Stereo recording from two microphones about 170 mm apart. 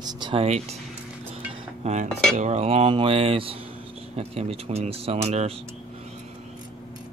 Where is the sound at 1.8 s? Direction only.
45° right (ahead or behind).